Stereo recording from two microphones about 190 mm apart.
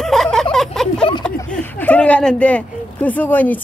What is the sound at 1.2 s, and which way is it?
Speech, 5° left (ahead or behind).